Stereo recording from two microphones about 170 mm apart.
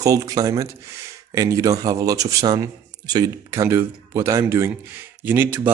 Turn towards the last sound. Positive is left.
turn(degrees=-10)  # may be behind; listen again after turning